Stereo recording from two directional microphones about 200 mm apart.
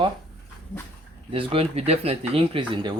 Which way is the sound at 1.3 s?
25° right (ahead or behind).